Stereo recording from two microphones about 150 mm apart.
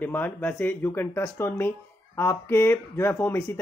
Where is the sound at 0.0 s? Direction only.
10° left (ahead or behind).